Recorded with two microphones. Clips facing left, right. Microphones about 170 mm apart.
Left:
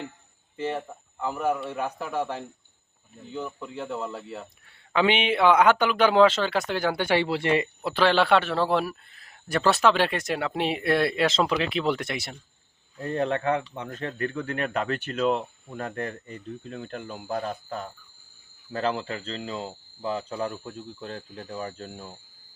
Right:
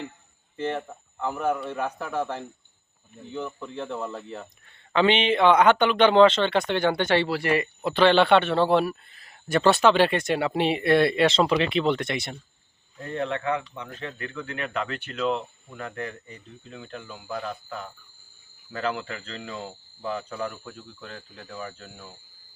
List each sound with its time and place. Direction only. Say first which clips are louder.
0.5 s a man's voice: right 1 dB; 10° left (ahead or behind)
7.3 s speech: even; 25° left (ahead or behind)
7.8 s a man's voice: right 6 dB; 5° left (ahead or behind)
13.0 s a man's voice: left 3 dB; 35° left (ahead or behind)